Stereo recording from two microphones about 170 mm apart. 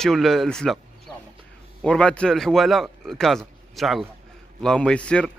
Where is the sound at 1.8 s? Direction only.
5° left (ahead or behind).